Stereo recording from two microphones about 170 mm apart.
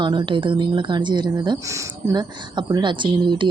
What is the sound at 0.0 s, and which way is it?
Speech, 30° right (ahead or behind).